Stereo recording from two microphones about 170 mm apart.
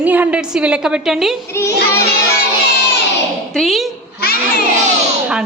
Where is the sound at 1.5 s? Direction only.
15° left (ahead or behind).